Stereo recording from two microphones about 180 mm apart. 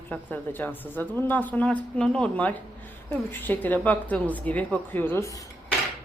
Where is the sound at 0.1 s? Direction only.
10° left (ahead or behind).